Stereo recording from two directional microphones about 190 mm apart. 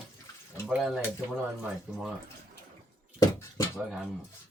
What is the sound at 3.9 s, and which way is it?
Speech, 5° right (ahead or behind).